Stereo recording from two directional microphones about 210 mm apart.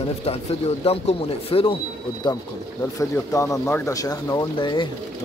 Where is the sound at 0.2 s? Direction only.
30° left (ahead or behind).